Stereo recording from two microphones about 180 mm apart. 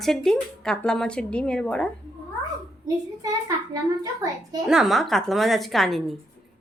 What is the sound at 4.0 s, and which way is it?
Speech, 20° right (ahead or behind).